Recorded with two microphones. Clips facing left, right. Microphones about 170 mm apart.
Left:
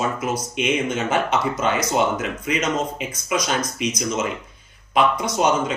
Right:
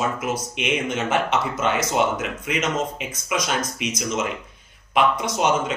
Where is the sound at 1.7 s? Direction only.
Centre (ahead or behind).